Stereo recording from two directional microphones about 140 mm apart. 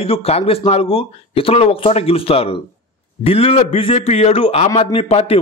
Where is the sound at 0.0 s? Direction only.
45° left (ahead or behind).